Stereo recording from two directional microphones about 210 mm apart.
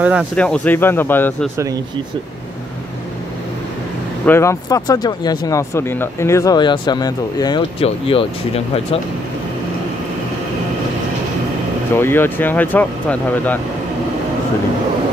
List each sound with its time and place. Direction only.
0.4 s speech: 5° left (ahead or behind)
4.3 s speech: 15° left (ahead or behind); by 9.0 s 30° left (ahead or behind)
11.9 s speech: 10° left (ahead or behind)